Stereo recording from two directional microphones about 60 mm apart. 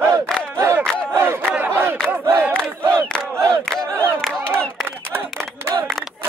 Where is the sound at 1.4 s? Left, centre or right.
Right.